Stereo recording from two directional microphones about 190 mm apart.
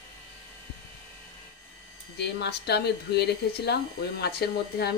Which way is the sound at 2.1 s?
60° left (ahead or behind).